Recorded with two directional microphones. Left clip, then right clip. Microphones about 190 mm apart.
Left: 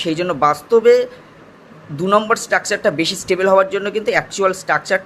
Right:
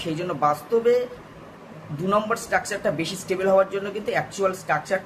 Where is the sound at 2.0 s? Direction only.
45° left (ahead or behind).